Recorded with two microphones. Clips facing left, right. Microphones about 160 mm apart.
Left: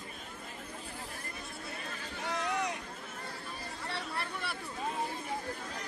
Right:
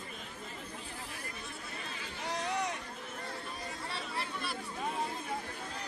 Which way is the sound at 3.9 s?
65° left (ahead or behind).